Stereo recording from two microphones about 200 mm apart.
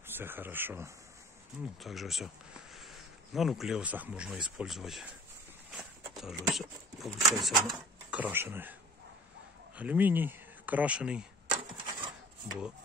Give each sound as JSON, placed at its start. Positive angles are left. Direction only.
{"t": 0.0, "sound": "speech", "side_deg": -10}
{"t": 1.8, "sound": "speech", "side_deg": 0}
{"t": 5.7, "sound": "a sound", "side_deg": -5}
{"t": 7.3, "sound": "speech", "side_deg": 0}
{"t": 9.8, "sound": "speech", "side_deg": -10}
{"t": 11.5, "sound": "a sound", "side_deg": -25}